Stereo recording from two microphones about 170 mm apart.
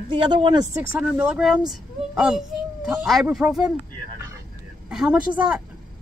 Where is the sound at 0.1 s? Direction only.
25° right (ahead or behind).